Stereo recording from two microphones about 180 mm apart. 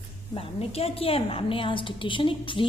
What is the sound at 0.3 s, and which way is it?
A woman's voice, 35° left (ahead or behind).